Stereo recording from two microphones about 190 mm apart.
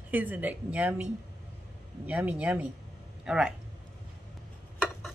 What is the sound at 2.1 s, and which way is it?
Speech, 10° right (ahead or behind).